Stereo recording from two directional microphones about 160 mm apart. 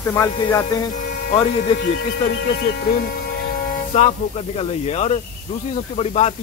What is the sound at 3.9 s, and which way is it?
Speech, 40° left (ahead or behind).